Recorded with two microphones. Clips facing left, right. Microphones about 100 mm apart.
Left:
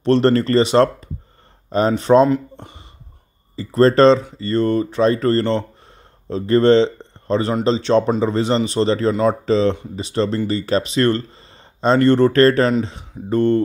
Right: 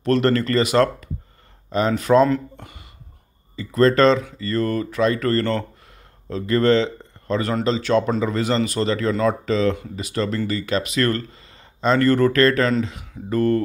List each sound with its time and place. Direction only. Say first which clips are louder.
0.0 s speech: left 4 dB; 30° left (ahead or behind)